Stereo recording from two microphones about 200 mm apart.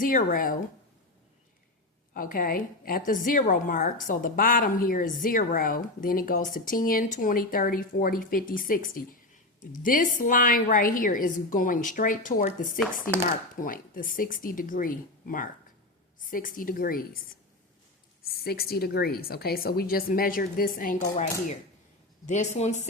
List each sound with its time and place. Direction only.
0.0 s a woman's voice: 40° left (ahead or behind)
2.1 s a woman's voice: 45° left (ahead or behind)
18.4 s a woman's voice: 50° left (ahead or behind)
22.3 s speech: 35° left (ahead or behind)